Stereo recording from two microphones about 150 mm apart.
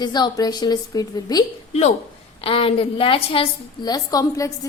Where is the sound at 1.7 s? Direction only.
45° left (ahead or behind).